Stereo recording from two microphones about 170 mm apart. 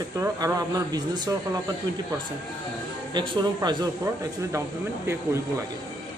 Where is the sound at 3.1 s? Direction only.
25° right (ahead or behind).